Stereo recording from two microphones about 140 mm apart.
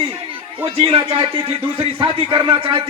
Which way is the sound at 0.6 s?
40° right (ahead or behind).